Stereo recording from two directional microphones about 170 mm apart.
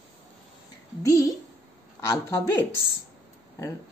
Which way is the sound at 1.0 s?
15° left (ahead or behind).